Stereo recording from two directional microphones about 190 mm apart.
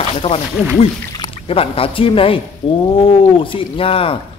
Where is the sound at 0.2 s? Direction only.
35° left (ahead or behind).